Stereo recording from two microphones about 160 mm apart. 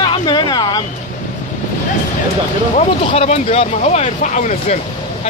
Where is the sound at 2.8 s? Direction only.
45° left (ahead or behind).